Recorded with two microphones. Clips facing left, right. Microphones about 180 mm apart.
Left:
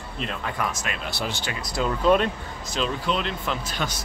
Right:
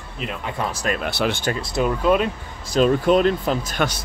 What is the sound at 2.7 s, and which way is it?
Speech, 50° right (ahead or behind).